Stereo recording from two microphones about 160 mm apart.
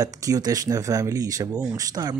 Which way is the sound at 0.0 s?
20° right (ahead or behind).